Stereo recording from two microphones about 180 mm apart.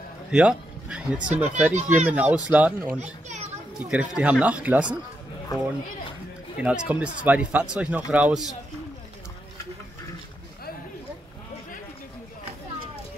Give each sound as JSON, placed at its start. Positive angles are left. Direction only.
{"t": 0.3, "sound": "speech", "side_deg": -5}
{"t": 3.0, "sound": "children playing", "side_deg": -40}
{"t": 3.9, "sound": "speech", "side_deg": -5}
{"t": 6.6, "sound": "speech", "side_deg": -5}